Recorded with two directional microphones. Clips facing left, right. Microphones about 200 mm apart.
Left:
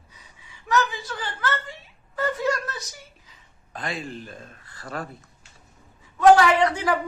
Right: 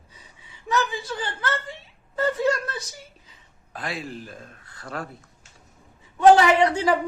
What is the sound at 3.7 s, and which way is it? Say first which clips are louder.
A man's voice: even; centre (ahead or behind).